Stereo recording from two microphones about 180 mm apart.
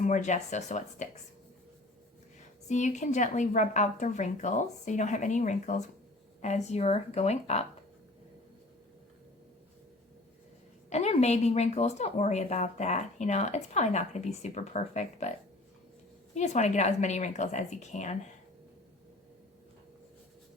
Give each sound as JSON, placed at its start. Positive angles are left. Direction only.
{"t": 0.0, "sound": "a woman's voice", "side_deg": 40}
{"t": 2.6, "sound": "a woman's voice", "side_deg": 40}
{"t": 10.8, "sound": "a woman's voice", "side_deg": 40}
{"t": 16.3, "sound": "a woman's voice", "side_deg": 40}